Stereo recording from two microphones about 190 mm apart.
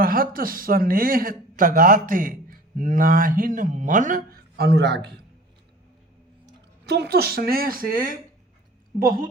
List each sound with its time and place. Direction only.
0.0 s speech: 50° right (ahead or behind)
6.8 s speech: 60° right (ahead or behind)